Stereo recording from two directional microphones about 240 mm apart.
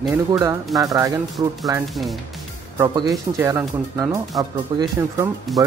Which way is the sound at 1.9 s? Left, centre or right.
Centre.